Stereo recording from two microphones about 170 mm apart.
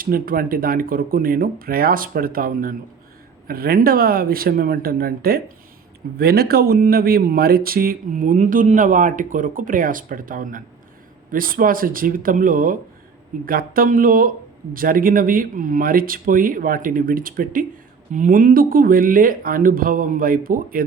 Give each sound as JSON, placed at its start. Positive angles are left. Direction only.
{"t": 0.0, "sound": "speech", "side_deg": -55}